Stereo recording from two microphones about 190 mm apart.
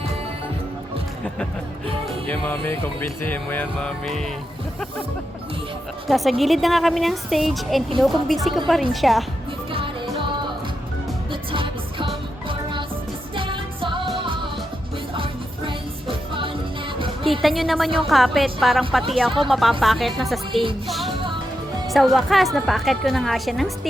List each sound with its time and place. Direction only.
2.2 s music: 10° left (ahead or behind)
6.1 s a woman's voice: centre (ahead or behind)
9.7 s music: 25° right (ahead or behind)
11.3 s music: 25° right (ahead or behind)
13.3 s music: 25° right (ahead or behind)
17.4 s a woman's voice: centre (ahead or behind)
20.8 s music: centre (ahead or behind)
21.8 s a woman's voice: centre (ahead or behind)